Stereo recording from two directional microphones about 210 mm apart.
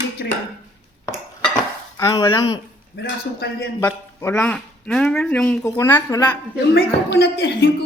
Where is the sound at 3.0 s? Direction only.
50° left (ahead or behind).